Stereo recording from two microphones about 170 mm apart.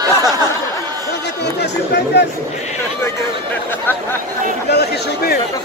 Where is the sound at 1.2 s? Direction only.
80° left.